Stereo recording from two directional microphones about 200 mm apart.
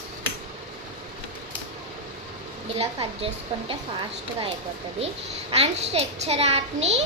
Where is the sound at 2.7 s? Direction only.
30° right (ahead or behind).